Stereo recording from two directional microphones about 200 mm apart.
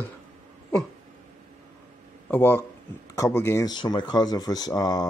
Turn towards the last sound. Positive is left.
turn(degrees=20)  # may be behind; listen again after turning